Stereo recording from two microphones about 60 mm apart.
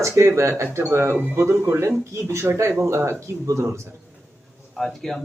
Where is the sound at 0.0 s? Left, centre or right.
Right.